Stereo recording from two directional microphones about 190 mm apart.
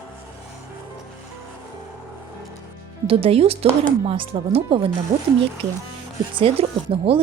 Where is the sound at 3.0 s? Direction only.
30° right (ahead or behind).